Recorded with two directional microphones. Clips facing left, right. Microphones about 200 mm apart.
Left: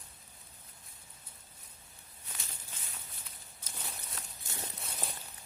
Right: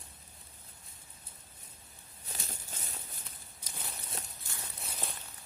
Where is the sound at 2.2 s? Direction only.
40° right (ahead or behind).